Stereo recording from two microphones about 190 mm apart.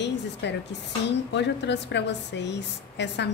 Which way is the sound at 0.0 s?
65° left (ahead or behind).